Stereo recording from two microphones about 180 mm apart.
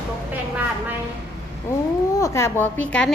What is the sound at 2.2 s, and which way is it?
Speech, 15° left (ahead or behind).